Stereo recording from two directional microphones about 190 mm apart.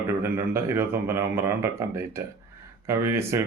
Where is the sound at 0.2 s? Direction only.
10° right (ahead or behind).